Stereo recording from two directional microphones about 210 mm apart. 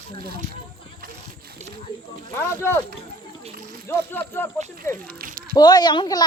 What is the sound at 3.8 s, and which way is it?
Speech, 10° left (ahead or behind).